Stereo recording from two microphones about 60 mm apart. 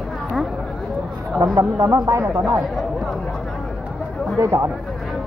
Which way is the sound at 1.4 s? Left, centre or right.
Right.